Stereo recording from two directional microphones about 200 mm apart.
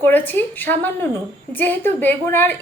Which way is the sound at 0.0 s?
10° left (ahead or behind).